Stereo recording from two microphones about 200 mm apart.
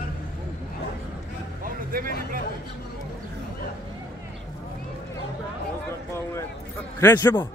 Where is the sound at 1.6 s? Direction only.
45° right (ahead or behind).